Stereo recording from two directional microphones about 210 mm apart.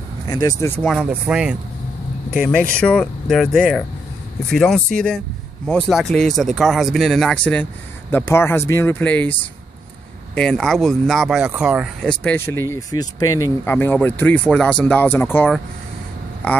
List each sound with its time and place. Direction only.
0.3 s speech: 15° left (ahead or behind)
0.9 s speech: 5° right (ahead or behind)